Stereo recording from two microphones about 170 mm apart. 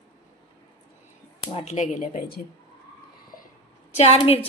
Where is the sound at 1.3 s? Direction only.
40° left (ahead or behind).